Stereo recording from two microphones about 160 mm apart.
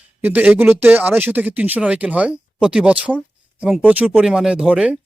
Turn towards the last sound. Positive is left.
turn(degrees=-5)  # may be behind; listen again after turning